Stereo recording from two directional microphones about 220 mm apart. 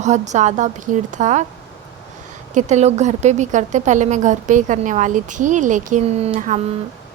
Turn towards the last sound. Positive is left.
turn(degrees=-30)  # may be behind; listen again after turning